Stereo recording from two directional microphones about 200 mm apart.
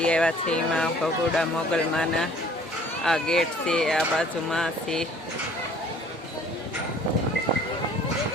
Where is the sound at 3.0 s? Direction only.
Centre (ahead or behind).